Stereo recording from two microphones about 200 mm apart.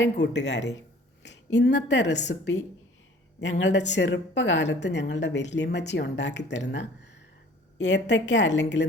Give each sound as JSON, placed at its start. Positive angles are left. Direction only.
{"t": 0.0, "sound": "a woman's voice", "side_deg": 60}
{"t": 3.6, "sound": "a woman's voice", "side_deg": 60}